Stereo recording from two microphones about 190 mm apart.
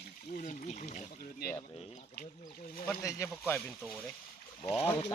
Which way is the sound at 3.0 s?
15° left (ahead or behind).